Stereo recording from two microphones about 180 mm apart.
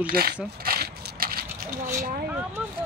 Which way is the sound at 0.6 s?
60° right (ahead or behind).